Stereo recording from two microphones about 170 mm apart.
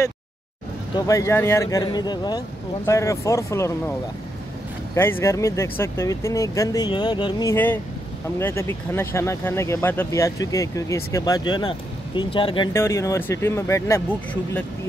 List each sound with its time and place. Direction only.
0.9 s speech: 20° left (ahead or behind)
4.9 s speech: 15° left (ahead or behind)
7.5 s speech: 10° left (ahead or behind); by 12.6 s 30° left (ahead or behind)
12.7 s speech: 15° left (ahead or behind)